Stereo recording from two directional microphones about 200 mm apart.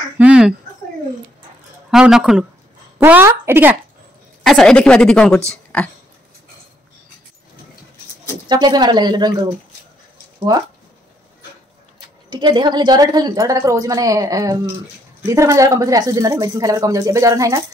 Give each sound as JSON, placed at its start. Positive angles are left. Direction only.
{"t": 0.2, "sound": "a sound", "side_deg": -5}
{"t": 1.9, "sound": "a woman's voice", "side_deg": 0}
{"t": 4.4, "sound": "a woman's voice", "side_deg": 0}
{"t": 8.5, "sound": "a woman's voice", "side_deg": -20}
{"t": 12.3, "sound": "speech", "side_deg": -20}